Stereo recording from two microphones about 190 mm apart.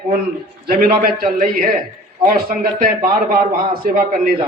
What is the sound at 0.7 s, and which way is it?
Speech, 50° right (ahead or behind).